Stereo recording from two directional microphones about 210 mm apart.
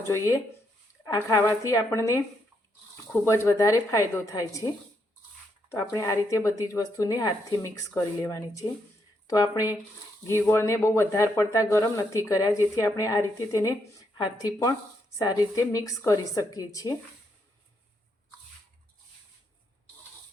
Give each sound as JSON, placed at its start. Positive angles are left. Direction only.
{"t": 1.0, "sound": "speech", "side_deg": 15}